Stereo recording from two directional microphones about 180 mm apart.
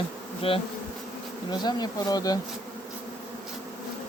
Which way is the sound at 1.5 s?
25° left (ahead or behind).